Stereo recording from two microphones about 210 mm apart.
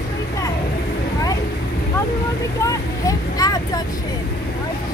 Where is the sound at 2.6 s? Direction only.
15° left (ahead or behind).